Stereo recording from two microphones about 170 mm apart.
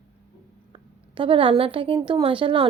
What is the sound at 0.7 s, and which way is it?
A woman's voice, 30° right (ahead or behind).